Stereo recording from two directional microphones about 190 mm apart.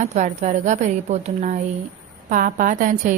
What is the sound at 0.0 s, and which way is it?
A woman's voice, 40° right (ahead or behind).